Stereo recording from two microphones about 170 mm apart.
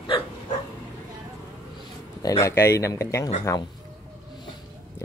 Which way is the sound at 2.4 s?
15° left (ahead or behind).